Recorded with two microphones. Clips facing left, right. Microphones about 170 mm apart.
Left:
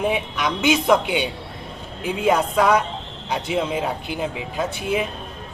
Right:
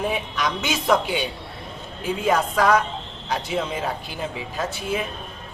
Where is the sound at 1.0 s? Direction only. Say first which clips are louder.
Left 2 dB; 15° left (ahead or behind).